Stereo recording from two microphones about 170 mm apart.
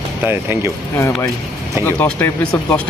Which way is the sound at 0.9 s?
15° left (ahead or behind).